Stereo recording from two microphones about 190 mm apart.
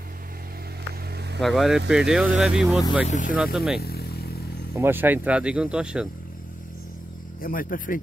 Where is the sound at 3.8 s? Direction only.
55° left (ahead or behind).